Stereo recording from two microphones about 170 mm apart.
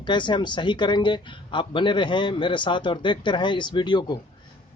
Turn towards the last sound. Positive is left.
turn(degrees=25)  # may be behind; listen again after turning